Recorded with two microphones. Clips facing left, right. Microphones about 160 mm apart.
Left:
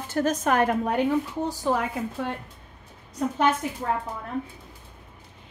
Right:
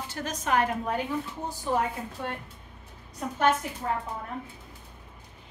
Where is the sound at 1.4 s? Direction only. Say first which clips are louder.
Left 4 dB; 90° left.